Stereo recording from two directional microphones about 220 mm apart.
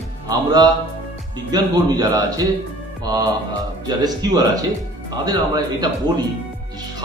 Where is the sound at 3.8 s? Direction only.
15° right (ahead or behind).